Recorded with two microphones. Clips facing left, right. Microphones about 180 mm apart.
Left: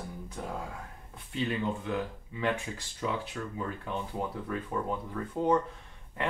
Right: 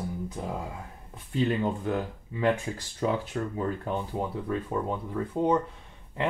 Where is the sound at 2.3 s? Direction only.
40° right (ahead or behind).